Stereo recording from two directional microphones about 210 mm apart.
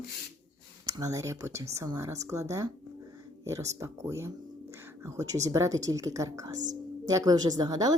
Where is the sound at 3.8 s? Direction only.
15° right (ahead or behind).